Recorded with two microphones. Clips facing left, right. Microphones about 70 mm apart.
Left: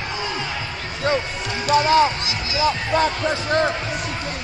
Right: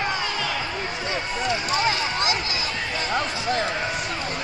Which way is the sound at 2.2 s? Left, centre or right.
Right.